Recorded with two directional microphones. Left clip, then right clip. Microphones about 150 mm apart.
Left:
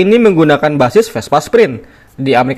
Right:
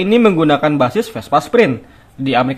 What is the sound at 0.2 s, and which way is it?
Speech, 10° left (ahead or behind).